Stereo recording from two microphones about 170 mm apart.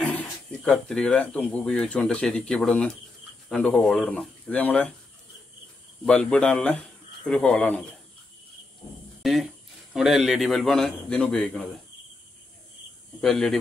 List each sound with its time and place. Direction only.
0.0 s speech: 5° left (ahead or behind)
6.0 s speech: 5° left (ahead or behind)
9.2 s speech: centre (ahead or behind)
13.2 s speech: centre (ahead or behind)